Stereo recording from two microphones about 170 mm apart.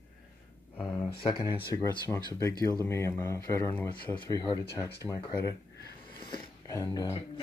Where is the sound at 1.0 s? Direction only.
30° left (ahead or behind); by 3.9 s 15° left (ahead or behind).